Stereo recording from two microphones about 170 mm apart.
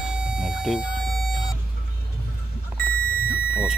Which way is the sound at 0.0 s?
5° right (ahead or behind).